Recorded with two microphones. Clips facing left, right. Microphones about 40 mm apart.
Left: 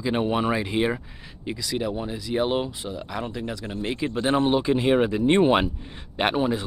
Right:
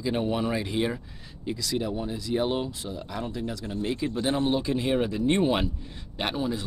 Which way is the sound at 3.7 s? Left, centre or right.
Centre.